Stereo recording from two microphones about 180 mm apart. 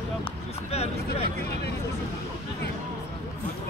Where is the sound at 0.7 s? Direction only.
35° left (ahead or behind).